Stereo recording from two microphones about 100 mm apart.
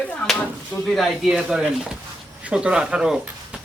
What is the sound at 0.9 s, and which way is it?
A man's voice, 5° right (ahead or behind).